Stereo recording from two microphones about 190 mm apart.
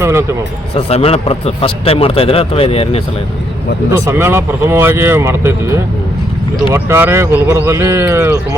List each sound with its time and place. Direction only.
0.0 s speech: 15° right (ahead or behind)
0.8 s a man's voice: 30° left (ahead or behind)
3.9 s speech: 15° right (ahead or behind)
6.7 s speech: 15° right (ahead or behind)